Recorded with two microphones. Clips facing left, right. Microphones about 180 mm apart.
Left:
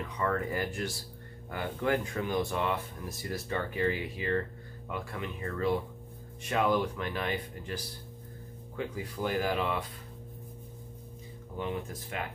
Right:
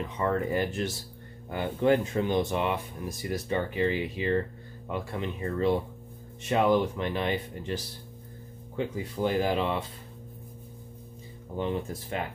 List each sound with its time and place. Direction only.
0.0 s speech: 25° right (ahead or behind)
11.5 s speech: 30° right (ahead or behind)